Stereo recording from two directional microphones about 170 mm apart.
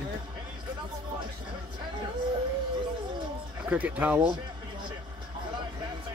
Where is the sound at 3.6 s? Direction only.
10° right (ahead or behind).